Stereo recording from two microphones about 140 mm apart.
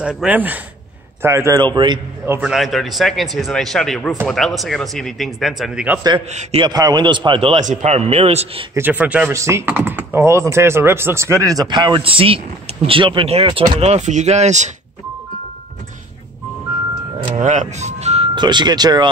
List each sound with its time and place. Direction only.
0.0 s a man's voice: 5° right (ahead or behind)
1.6 s a man's voice: 35° right (ahead or behind)
2.2 s a man's voice: 15° right (ahead or behind)
2.5 s a man's voice: centre (ahead or behind)
6.6 s a man's voice: 30° right (ahead or behind); by 8.6 s 45° right (ahead or behind)
8.7 s a man's voice: 15° right (ahead or behind); by 14.7 s 55° right (ahead or behind)
17.4 s speech: 60° right (ahead or behind)
18.3 s a man's voice: 30° right (ahead or behind)